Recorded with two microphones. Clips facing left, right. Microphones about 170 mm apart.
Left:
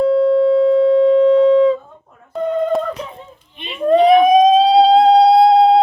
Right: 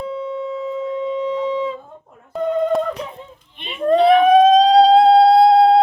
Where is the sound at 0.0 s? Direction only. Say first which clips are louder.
Left 13 dB; 70° left (ahead or behind).